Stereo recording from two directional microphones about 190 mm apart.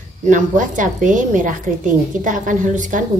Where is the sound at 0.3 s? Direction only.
45° right (ahead or behind).